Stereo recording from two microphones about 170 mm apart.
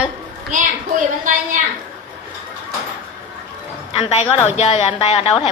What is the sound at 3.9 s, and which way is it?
A woman's voice, 40° left (ahead or behind).